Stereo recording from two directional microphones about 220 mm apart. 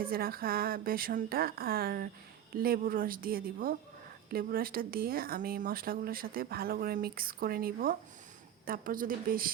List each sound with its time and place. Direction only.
0.0 s speech: 40° right (ahead or behind)